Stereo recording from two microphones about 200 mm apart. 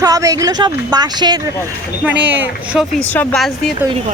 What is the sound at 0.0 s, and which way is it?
Speech, 15° right (ahead or behind).